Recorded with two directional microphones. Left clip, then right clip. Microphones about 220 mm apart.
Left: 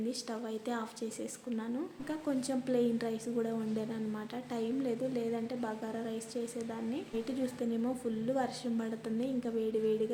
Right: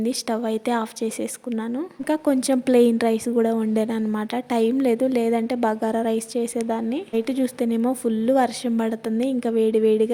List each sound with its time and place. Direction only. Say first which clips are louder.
0.0 s a woman's voice: right 14 dB; 40° right (ahead or behind)